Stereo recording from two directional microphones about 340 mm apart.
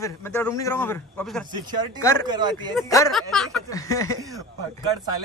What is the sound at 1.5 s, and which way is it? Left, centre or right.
Speech, centre.